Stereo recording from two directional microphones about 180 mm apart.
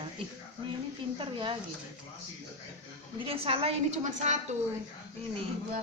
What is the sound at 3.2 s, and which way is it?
A woman's voice, 30° right (ahead or behind).